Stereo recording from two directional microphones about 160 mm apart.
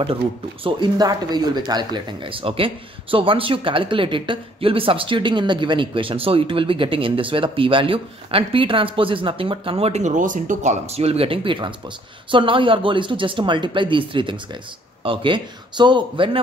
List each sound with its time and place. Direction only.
0.7 s speech: 25° right (ahead or behind)